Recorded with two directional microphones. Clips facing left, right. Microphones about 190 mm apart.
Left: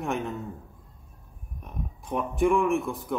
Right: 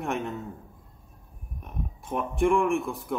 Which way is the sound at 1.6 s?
Centre (ahead or behind).